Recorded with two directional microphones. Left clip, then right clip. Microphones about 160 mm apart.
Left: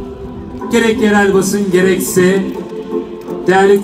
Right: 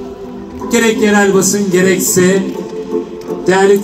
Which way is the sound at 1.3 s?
15° right (ahead or behind).